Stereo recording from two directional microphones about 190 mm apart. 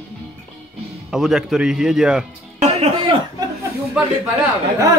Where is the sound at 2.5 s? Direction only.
35° right (ahead or behind).